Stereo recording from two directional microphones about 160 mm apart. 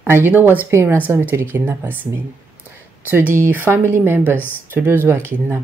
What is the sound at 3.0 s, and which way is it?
Speech, 15° right (ahead or behind).